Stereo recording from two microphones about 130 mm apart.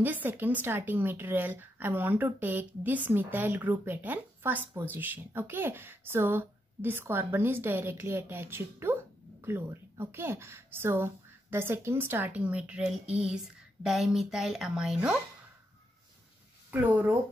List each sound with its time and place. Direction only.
0.0 s a woman's voice: 15° right (ahead or behind)
16.7 s speech: 15° right (ahead or behind)